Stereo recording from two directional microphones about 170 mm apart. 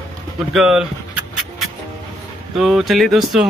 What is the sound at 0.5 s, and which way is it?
Speech, 5° right (ahead or behind).